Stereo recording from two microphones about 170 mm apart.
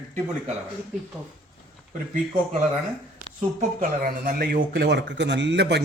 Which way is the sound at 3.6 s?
55° right (ahead or behind).